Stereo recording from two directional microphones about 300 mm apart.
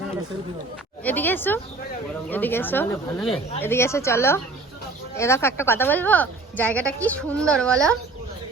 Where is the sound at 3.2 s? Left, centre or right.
Centre.